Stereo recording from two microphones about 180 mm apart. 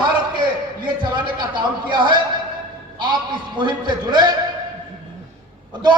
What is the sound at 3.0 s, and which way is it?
A man's voice, 25° right (ahead or behind).